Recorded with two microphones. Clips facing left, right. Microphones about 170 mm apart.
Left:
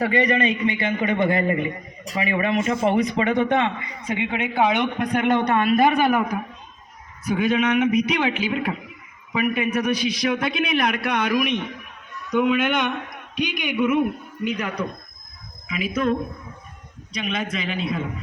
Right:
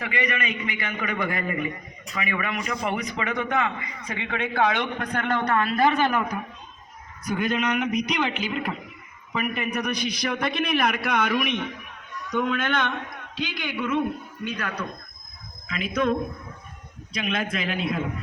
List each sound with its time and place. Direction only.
0.0 s a man's voice: 35° left (ahead or behind); by 14.8 s 20° left (ahead or behind)
15.6 s a man's voice: 5° left (ahead or behind)